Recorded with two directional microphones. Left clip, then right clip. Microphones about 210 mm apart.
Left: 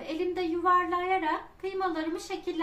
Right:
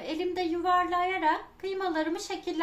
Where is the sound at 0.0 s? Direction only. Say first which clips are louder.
Even; 35° right (ahead or behind).